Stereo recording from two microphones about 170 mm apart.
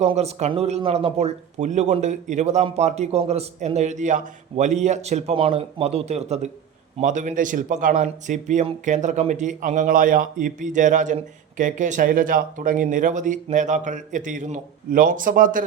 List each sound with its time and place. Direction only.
0.0 s speech: 40° right (ahead or behind)